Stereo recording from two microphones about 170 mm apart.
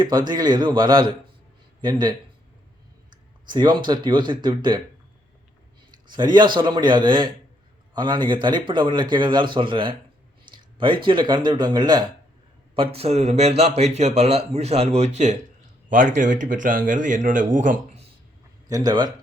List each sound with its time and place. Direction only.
0.3 s a man's voice: 25° right (ahead or behind)
5.9 s a man's voice: 25° right (ahead or behind); by 18.0 s 50° right (ahead or behind)
18.7 s a man's voice: 25° right (ahead or behind)